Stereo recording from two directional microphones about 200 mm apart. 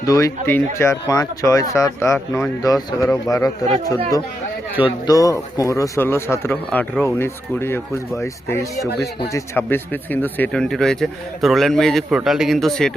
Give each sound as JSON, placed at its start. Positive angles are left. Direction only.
{"t": 0.0, "sound": "a man's voice", "side_deg": 15}